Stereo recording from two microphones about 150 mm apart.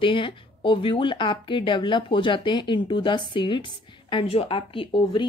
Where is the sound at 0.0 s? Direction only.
35° left (ahead or behind).